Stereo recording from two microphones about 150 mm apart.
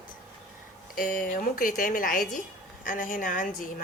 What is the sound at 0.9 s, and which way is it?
A woman's voice, 70° left (ahead or behind).